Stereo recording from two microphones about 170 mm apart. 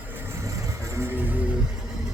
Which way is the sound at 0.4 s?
15° right (ahead or behind).